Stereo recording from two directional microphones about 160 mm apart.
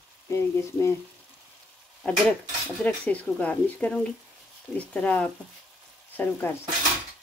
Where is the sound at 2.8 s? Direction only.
10° left (ahead or behind).